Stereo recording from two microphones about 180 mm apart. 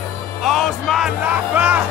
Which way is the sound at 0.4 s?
Centre (ahead or behind).